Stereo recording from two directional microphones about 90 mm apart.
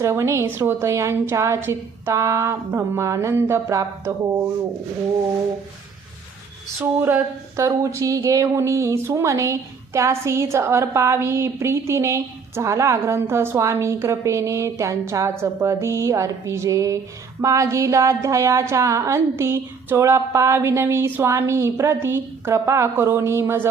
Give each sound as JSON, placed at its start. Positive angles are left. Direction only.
{"t": 0.0, "sound": "speech", "side_deg": -30}
{"t": 6.7, "sound": "a sound", "side_deg": -20}
{"t": 7.5, "sound": "speech", "side_deg": -35}